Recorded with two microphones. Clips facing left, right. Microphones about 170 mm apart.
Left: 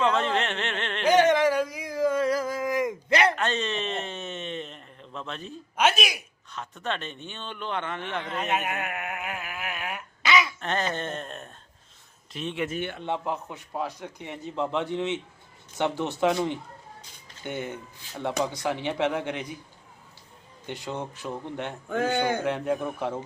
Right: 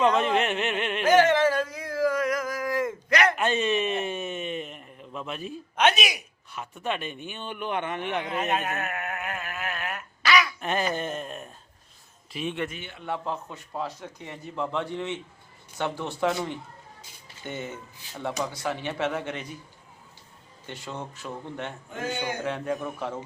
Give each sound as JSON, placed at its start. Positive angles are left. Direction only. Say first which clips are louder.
{"t": 0.0, "sound": "speech", "louder": "right 2 dB", "side_deg": -15}
{"t": 1.1, "sound": "a sound", "louder": "even", "side_deg": 20}
{"t": 3.3, "sound": "a sound", "louder": "right 3 dB", "side_deg": -10}
{"t": 5.7, "sound": "speech", "louder": "right 1 dB", "side_deg": 0}
{"t": 6.5, "sound": "speech", "louder": "right 1 dB", "side_deg": -10}
{"t": 8.5, "sound": "a sound", "louder": "even", "side_deg": 10}
{"t": 10.6, "sound": "a sound", "louder": "right 1 dB", "side_deg": -10}
{"t": 10.9, "sound": "speech", "louder": "right 2 dB", "side_deg": -5}
{"t": 13.0, "sound": "a man's voice", "louder": "left 2 dB", "side_deg": 20}
{"t": 17.0, "sound": "music", "louder": "even", "side_deg": -5}
{"t": 18.2, "sound": "speech", "louder": "left 3 dB", "side_deg": 15}
{"t": 20.7, "sound": "speech", "louder": "left 3 dB", "side_deg": 15}